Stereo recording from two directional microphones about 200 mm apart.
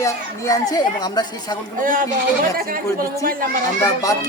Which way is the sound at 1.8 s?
40° right (ahead or behind).